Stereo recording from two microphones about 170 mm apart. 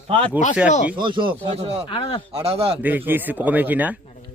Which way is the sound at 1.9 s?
30° left (ahead or behind).